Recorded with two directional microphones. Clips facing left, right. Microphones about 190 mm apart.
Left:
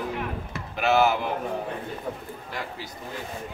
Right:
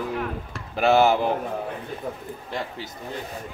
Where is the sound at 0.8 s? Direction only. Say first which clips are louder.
Right 3 dB; 35° right (ahead or behind).